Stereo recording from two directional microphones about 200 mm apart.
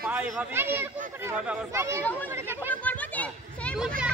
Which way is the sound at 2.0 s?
10° left (ahead or behind).